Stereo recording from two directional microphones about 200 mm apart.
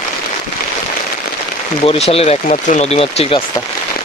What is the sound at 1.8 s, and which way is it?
Speech, 30° left (ahead or behind).